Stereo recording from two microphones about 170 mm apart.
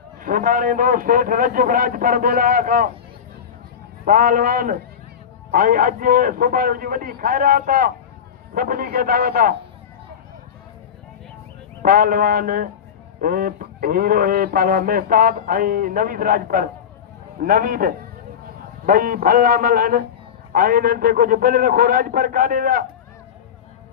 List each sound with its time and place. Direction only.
0.2 s a man's voice: 55° right (ahead or behind)
4.0 s speech: 55° right (ahead or behind)
11.8 s speech: 55° right (ahead or behind)